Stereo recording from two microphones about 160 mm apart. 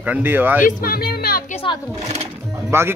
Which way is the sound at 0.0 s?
10° right (ahead or behind).